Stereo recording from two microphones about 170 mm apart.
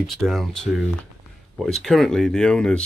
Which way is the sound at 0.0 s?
Centre (ahead or behind).